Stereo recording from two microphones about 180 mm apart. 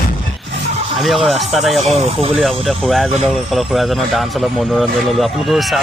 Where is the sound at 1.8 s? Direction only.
35° right (ahead or behind).